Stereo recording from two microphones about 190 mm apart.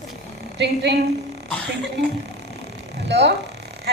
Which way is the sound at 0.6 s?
65° right (ahead or behind).